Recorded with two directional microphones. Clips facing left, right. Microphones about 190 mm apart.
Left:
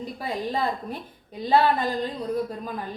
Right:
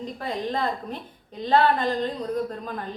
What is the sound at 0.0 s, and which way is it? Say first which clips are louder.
A woman's voice: even; 10° left (ahead or behind).